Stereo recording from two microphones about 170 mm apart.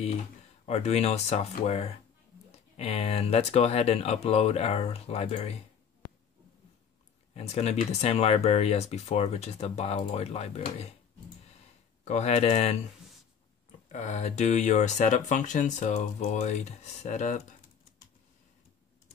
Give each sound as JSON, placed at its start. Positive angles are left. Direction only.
{"t": 0.7, "sound": "speech", "side_deg": 40}
{"t": 7.3, "sound": "speech", "side_deg": 40}
{"t": 12.0, "sound": "speech", "side_deg": 40}